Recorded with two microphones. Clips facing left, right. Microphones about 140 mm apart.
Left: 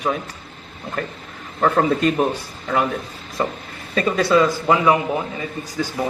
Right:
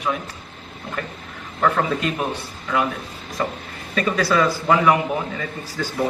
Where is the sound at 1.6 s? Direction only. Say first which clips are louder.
Left 3 dB; 40° left (ahead or behind).